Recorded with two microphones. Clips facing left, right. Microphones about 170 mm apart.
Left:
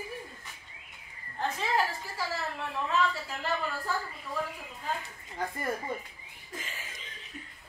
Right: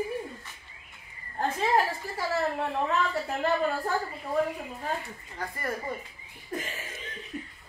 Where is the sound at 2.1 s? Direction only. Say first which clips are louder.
Right 7 dB; 55° right (ahead or behind).